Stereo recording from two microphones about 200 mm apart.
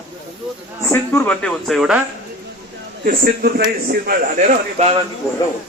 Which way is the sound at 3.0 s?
45° right (ahead or behind).